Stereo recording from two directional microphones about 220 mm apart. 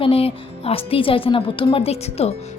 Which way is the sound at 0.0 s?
25° left (ahead or behind).